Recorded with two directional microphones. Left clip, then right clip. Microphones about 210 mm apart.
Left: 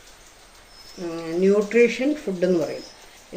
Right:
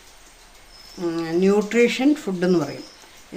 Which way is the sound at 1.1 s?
45° right (ahead or behind).